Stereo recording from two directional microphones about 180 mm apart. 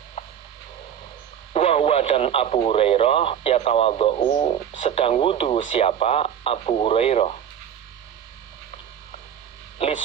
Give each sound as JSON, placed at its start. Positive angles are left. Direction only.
{"t": 0.2, "sound": "hum", "side_deg": 35}
{"t": 1.5, "sound": "speech", "side_deg": 35}
{"t": 9.8, "sound": "speech", "side_deg": 35}